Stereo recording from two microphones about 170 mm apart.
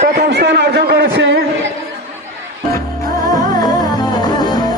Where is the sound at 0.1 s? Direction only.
75° right (ahead or behind); by 1.4 s 90° right.